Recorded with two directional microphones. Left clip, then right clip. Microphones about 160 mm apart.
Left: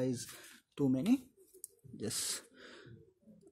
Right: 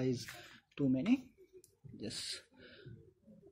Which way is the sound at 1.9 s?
60° left (ahead or behind).